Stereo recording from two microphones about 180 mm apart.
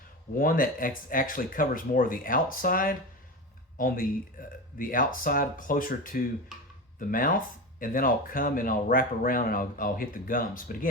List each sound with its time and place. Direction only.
0.3 s speech: 50° left (ahead or behind)